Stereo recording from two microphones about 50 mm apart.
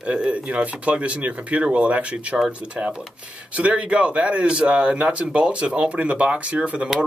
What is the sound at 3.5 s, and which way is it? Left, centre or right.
Speech, right.